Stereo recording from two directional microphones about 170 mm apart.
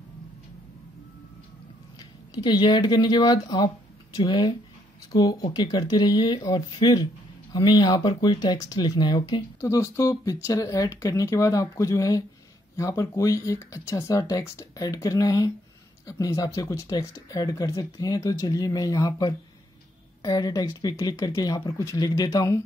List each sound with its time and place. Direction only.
2.0 s speech: 25° left (ahead or behind)